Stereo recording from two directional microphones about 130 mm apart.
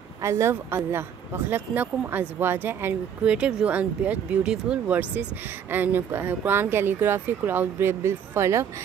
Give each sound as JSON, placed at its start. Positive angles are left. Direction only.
{"t": 0.2, "sound": "speech", "side_deg": -20}